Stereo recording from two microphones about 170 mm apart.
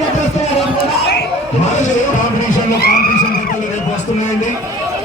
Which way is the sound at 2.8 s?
65° left (ahead or behind).